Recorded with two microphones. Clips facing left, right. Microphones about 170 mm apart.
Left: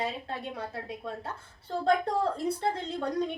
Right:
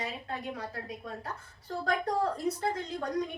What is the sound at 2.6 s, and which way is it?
Speech, 30° left (ahead or behind).